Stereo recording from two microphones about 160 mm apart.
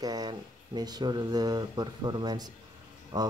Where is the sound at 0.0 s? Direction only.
25° right (ahead or behind).